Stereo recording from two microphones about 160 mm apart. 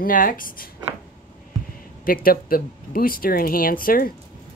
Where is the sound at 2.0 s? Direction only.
65° left (ahead or behind).